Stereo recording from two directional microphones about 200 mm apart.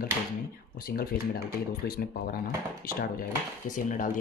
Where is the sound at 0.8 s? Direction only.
45° left (ahead or behind).